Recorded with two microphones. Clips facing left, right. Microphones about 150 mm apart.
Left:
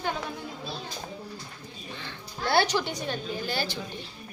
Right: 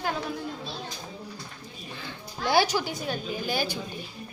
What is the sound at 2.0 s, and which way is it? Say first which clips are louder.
Music: right 2 dB; 10° right (ahead or behind).